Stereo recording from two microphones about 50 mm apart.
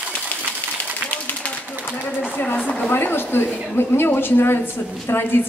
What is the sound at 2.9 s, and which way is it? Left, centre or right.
A woman's voice, left.